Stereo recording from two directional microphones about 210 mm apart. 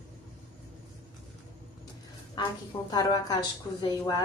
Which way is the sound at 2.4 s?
20° left (ahead or behind).